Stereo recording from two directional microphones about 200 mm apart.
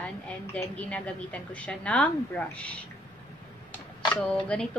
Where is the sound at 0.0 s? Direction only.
5° left (ahead or behind).